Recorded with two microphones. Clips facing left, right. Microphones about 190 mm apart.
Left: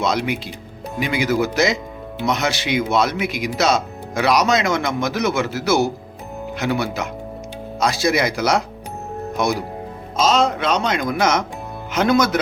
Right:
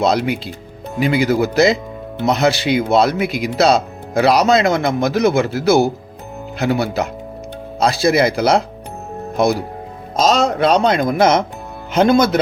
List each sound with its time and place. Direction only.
0.0 s speech: 35° right (ahead or behind)
10.2 s speech: 40° right (ahead or behind)